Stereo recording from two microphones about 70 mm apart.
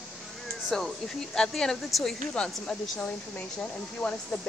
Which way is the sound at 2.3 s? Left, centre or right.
Centre.